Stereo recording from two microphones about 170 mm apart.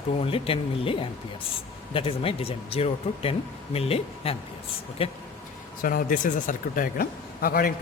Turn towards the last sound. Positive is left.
turn(degrees=60)  # may be behind; listen again after turning